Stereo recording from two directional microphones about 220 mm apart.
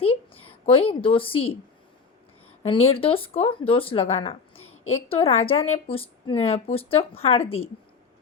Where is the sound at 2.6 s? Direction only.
25° left (ahead or behind).